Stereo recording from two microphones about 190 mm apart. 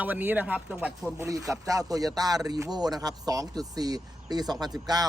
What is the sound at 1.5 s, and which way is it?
Speech, 15° right (ahead or behind).